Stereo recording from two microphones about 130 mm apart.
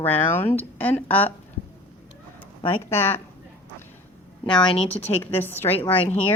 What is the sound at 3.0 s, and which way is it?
Speech, 15° left (ahead or behind).